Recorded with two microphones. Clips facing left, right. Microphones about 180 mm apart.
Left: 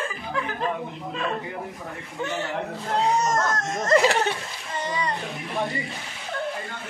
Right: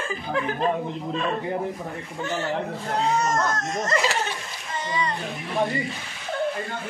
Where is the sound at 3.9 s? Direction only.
50° left (ahead or behind).